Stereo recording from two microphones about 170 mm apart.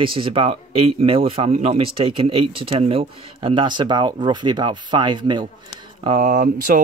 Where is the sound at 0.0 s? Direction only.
30° right (ahead or behind).